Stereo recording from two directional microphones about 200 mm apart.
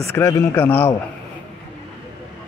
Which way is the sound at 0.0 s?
15° left (ahead or behind).